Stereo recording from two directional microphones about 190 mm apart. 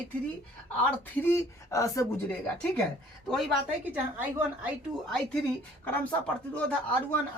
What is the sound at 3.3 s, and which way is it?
A woman's voice, centre (ahead or behind).